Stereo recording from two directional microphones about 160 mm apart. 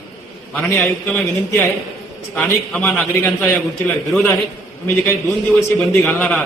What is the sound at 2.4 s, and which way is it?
A man's voice, 5° left (ahead or behind).